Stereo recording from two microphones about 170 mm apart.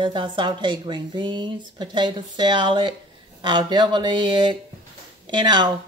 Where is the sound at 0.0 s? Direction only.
30° right (ahead or behind).